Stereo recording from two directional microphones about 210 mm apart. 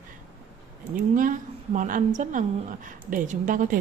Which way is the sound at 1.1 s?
40° right (ahead or behind).